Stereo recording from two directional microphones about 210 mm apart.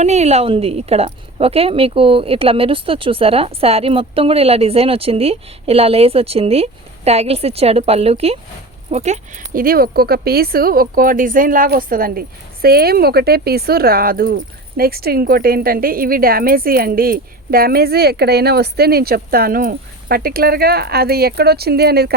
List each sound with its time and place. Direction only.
0.0 s speech: 30° right (ahead or behind); by 22.1 s 50° right (ahead or behind)